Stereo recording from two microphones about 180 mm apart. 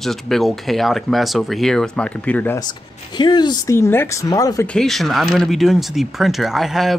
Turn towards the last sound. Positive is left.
turn(degrees=0)  # may be behind; listen again after turning